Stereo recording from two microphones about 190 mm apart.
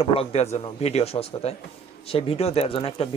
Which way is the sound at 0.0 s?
30° left (ahead or behind).